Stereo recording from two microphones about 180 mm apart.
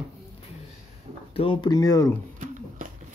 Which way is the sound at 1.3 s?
30° left (ahead or behind).